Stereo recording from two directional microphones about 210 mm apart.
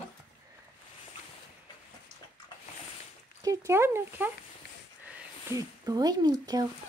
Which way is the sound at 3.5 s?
10° right (ahead or behind).